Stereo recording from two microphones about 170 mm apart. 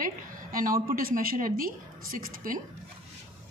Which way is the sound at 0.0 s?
55° right (ahead or behind).